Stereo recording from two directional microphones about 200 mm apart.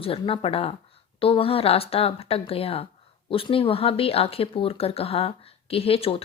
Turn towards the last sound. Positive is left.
turn(degrees=30)  # may be behind; listen again after turning